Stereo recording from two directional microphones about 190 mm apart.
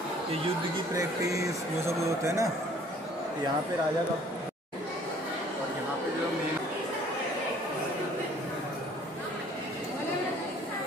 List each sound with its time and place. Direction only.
0.9 s speech: 15° right (ahead or behind)